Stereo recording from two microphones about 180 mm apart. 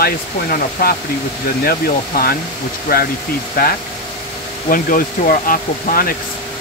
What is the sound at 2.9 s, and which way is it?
Speech, 55° left (ahead or behind).